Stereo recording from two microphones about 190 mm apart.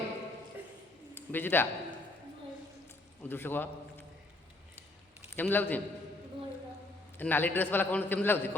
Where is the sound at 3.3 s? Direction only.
10° left (ahead or behind).